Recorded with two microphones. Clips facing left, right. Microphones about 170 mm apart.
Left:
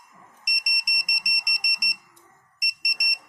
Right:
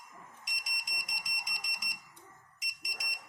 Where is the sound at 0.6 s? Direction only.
15° left (ahead or behind).